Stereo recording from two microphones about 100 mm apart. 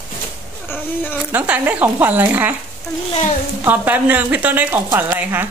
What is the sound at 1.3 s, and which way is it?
Speech, 15° right (ahead or behind).